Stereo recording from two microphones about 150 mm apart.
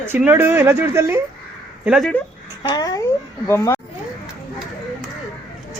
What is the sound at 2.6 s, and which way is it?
Speech, 25° left (ahead or behind).